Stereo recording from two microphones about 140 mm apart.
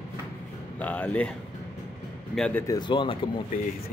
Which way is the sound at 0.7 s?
10° left (ahead or behind).